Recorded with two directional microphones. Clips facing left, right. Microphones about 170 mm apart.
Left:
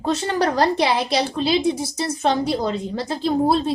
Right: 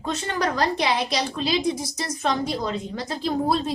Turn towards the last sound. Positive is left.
turn(degrees=30)  # may be behind; listen again after turning